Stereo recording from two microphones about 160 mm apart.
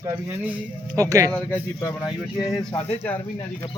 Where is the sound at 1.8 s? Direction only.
20° left (ahead or behind).